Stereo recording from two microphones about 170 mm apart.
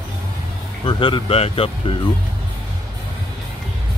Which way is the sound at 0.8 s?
30° left (ahead or behind).